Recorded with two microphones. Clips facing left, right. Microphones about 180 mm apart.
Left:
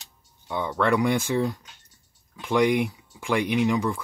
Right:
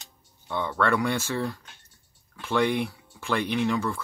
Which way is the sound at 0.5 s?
10° left (ahead or behind).